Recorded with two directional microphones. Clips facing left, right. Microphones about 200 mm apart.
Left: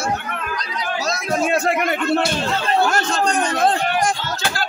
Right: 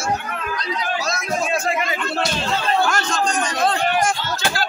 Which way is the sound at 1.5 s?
65° left (ahead or behind).